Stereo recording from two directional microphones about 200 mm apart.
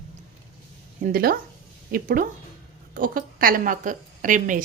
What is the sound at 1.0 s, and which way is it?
A woman's voice, 45° right (ahead or behind).